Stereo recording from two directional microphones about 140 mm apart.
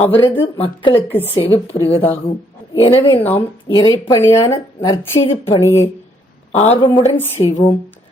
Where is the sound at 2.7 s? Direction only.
40° left (ahead or behind).